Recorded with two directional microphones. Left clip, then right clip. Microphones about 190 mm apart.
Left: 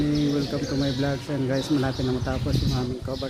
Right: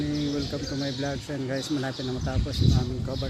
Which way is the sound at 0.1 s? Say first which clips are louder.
Left 4 dB; 20° right (ahead or behind).